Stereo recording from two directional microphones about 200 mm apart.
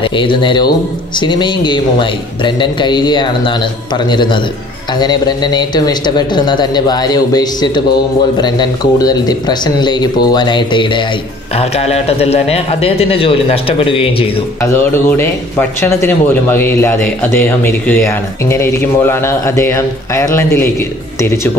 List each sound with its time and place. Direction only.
0.0 s speech: 25° left (ahead or behind)
14.6 s speech: 10° left (ahead or behind)